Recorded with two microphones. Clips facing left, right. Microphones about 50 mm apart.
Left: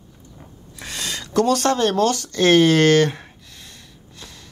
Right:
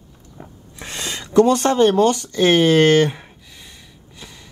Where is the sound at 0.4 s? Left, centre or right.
Right.